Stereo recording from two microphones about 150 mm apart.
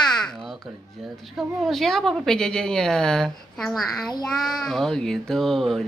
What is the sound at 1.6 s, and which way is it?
Speech, centre (ahead or behind).